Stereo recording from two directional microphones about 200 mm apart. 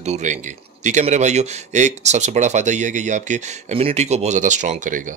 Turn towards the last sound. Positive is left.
turn(degrees=-40)  # may be behind; listen again after turning